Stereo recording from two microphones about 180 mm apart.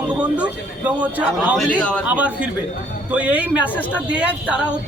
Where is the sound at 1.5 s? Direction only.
Centre (ahead or behind).